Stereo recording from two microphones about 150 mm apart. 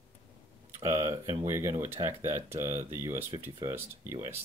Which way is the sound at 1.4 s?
20° right (ahead or behind).